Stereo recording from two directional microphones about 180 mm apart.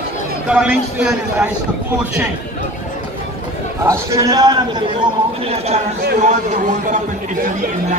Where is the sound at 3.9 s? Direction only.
20° right (ahead or behind).